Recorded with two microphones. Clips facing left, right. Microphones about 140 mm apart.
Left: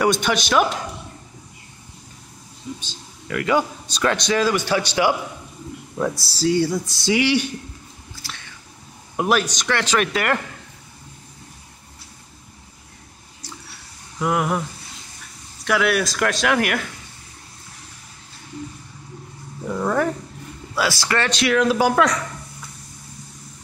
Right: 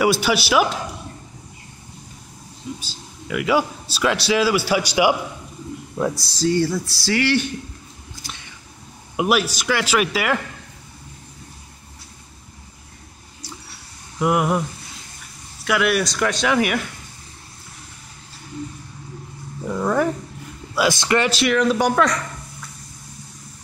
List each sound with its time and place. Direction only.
0.0 s speech: 5° right (ahead or behind)
2.8 s a man's voice: 10° right (ahead or behind)
6.2 s speech: 5° left (ahead or behind)
9.1 s a man's voice: 5° right (ahead or behind)
14.2 s a man's voice: 15° right (ahead or behind)
15.6 s speech: centre (ahead or behind)
19.6 s speech: centre (ahead or behind)
20.7 s a man's voice: 20° right (ahead or behind)
21.3 s speech: centre (ahead or behind)